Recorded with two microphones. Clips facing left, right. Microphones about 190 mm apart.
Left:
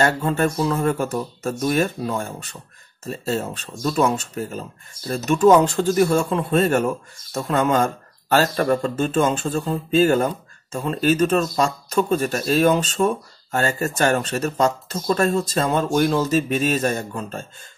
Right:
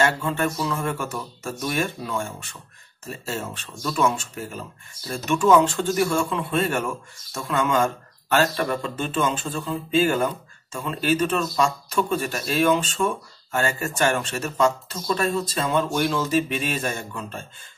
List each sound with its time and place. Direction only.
0.0 s speech: 40° left (ahead or behind)